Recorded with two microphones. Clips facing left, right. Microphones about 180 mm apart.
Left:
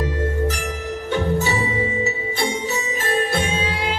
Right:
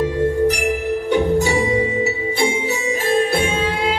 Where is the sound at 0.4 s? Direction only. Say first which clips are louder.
Right 7 dB; 15° right (ahead or behind).